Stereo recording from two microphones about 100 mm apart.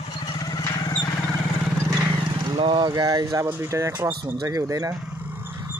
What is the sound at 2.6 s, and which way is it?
Speech, 55° right (ahead or behind).